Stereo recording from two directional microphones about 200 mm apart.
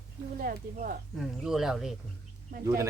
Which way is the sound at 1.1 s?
Centre (ahead or behind).